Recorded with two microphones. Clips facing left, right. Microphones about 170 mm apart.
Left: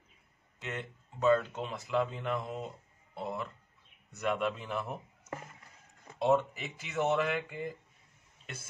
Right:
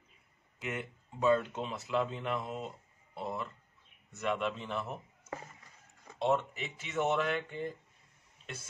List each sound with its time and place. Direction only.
0.6 s speech: 10° right (ahead or behind)